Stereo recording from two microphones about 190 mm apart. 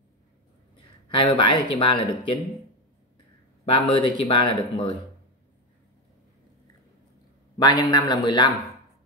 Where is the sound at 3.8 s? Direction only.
25° left (ahead or behind).